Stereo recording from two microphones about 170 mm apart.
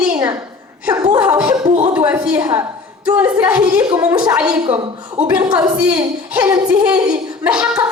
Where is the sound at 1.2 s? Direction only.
10° right (ahead or behind).